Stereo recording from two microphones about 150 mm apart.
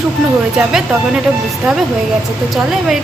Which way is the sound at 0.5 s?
5° right (ahead or behind).